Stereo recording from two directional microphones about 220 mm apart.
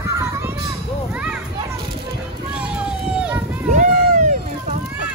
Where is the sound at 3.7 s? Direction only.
35° right (ahead or behind).